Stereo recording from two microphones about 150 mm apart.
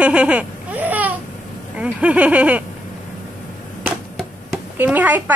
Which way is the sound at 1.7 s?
10° right (ahead or behind).